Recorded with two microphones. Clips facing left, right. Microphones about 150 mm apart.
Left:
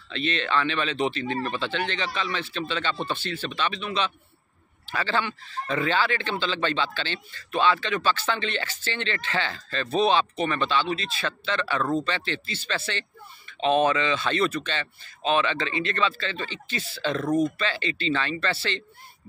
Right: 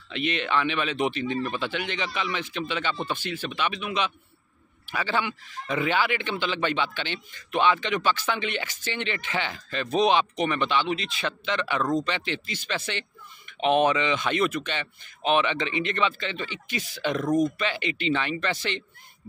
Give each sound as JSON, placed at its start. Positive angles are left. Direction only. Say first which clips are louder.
{"t": 0.1, "sound": "speech", "louder": "even", "side_deg": -15}